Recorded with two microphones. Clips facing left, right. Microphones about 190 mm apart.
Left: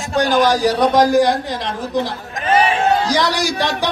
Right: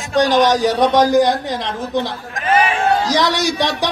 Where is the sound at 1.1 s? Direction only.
25° right (ahead or behind).